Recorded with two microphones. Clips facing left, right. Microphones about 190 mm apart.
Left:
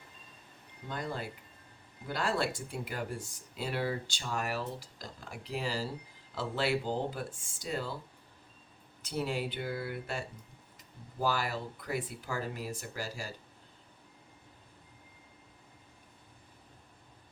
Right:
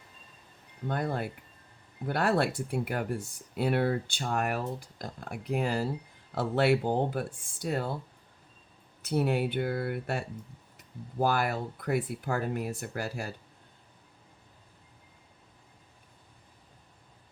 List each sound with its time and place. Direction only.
0.9 s speech: 60° right (ahead or behind)
9.0 s speech: 60° right (ahead or behind)